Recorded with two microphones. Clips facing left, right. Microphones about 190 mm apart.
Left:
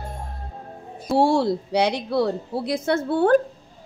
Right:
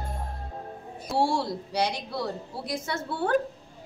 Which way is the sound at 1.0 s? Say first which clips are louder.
Left 7 dB; 60° left (ahead or behind).